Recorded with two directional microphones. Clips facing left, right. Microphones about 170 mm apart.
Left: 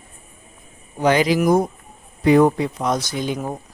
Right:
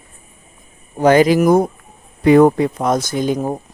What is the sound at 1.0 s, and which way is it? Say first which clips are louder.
Speech: right 6 dB; 45° right (ahead or behind).